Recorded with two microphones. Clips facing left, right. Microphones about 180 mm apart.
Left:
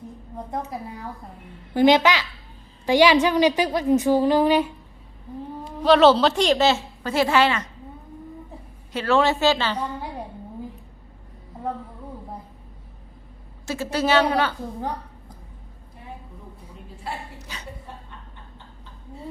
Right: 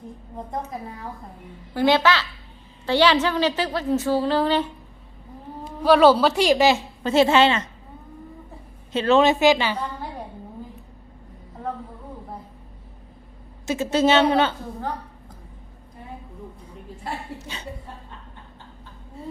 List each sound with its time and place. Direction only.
1.7 s a woman's voice: 20° left (ahead or behind)
5.8 s a woman's voice: 10° right (ahead or behind); by 7.7 s 25° right (ahead or behind)
8.9 s a woman's voice: 20° right (ahead or behind)
13.7 s a woman's voice: 20° right (ahead or behind)
17.5 s chuckle: 25° right (ahead or behind)